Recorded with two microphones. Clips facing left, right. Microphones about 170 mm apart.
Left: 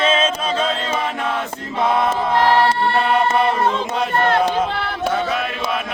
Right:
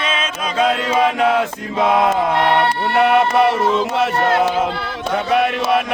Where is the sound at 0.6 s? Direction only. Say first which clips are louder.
Right 6 dB; 90° right.